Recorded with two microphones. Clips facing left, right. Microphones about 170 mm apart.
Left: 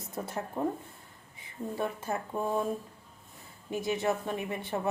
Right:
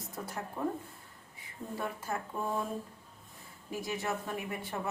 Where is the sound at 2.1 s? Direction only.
30° left (ahead or behind).